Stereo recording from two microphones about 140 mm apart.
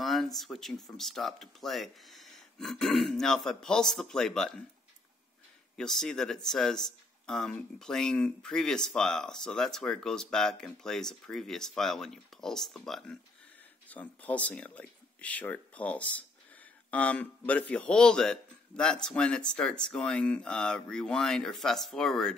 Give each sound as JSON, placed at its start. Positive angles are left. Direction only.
{"t": 0.0, "sound": "speech", "side_deg": 0}
{"t": 5.8, "sound": "speech", "side_deg": 5}